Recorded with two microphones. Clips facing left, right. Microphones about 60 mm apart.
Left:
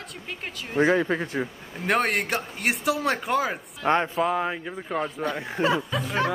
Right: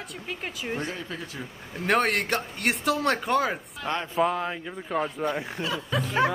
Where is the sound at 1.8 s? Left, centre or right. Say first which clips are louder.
Even; centre.